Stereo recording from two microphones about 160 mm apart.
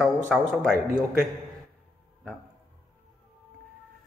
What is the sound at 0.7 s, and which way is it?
Speech, 70° right (ahead or behind).